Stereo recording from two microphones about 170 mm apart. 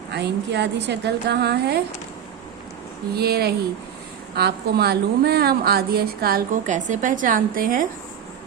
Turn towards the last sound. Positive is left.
turn(degrees=-55)  # may be behind; listen again after turning